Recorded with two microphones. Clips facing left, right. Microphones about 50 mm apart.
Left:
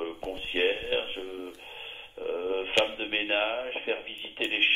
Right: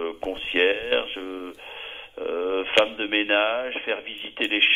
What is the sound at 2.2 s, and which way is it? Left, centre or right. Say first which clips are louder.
Speech: right 5 dB; right.